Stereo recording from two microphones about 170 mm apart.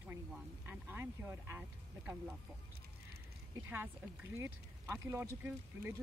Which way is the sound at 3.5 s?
15° right (ahead or behind).